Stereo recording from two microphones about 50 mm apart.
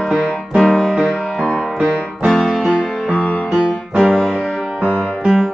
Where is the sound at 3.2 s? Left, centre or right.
Left.